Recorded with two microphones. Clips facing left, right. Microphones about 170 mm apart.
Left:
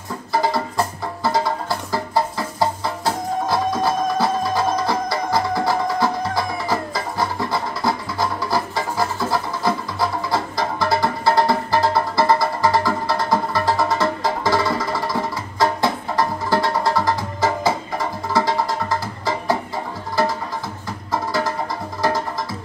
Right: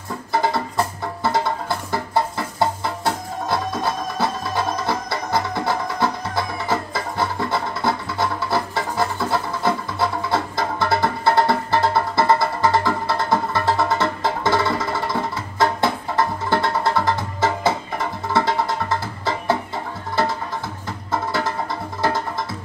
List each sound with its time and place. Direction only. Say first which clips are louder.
0.3 s music: left 1 dB; 25° right (ahead or behind)
1.9 s music: left 1 dB; 25° right (ahead or behind)
3.8 s music: left 4 dB; 25° right (ahead or behind)